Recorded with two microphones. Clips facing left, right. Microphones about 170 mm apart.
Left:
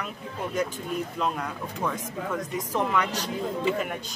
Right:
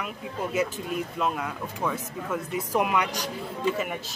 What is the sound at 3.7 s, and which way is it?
Speech, 5° right (ahead or behind).